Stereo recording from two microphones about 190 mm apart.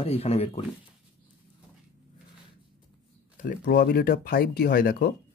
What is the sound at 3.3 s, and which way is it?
Speech, 45° left (ahead or behind).